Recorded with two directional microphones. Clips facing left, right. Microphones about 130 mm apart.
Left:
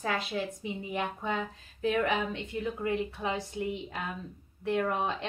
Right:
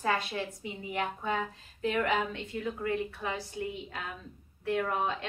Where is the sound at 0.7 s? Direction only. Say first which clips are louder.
Left 1 dB; 20° left (ahead or behind).